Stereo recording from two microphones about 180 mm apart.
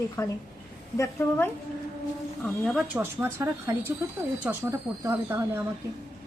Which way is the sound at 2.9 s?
10° right (ahead or behind).